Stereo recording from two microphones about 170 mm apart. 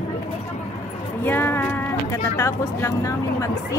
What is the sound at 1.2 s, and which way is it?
Speech, 10° left (ahead or behind).